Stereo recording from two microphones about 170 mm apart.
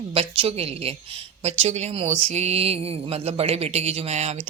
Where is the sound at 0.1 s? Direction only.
35° right (ahead or behind).